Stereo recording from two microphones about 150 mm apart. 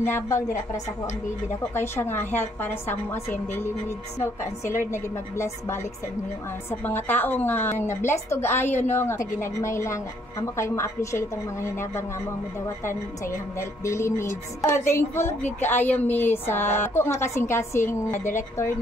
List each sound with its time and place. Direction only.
0.0 s a woman's voice: 15° left (ahead or behind)
1.7 s a woman's voice: 15° left (ahead or behind)